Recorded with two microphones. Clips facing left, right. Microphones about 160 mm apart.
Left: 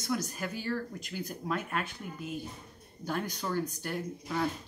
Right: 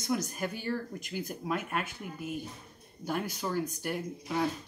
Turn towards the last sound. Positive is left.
turn(degrees=-15)  # may be behind; listen again after turning